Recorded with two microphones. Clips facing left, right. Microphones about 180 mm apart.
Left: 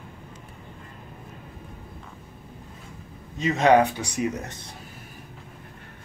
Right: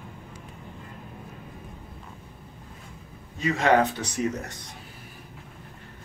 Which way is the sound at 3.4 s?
20° left (ahead or behind).